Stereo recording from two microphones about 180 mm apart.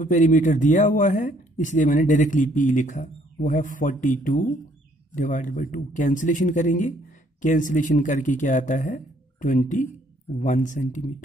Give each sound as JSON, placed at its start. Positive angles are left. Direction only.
{"t": 0.0, "sound": "speech", "side_deg": 45}